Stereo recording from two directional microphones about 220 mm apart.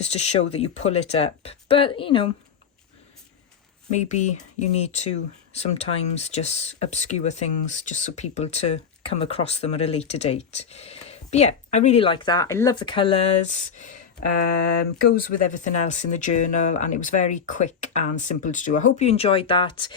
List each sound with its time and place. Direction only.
0.0 s speech: 30° left (ahead or behind)
3.9 s speech: 30° left (ahead or behind)
14.6 s speech: 45° left (ahead or behind); by 19.9 s 20° left (ahead or behind)